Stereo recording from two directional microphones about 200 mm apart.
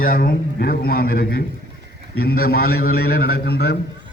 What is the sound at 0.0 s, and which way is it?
A man's voice, 45° left (ahead or behind).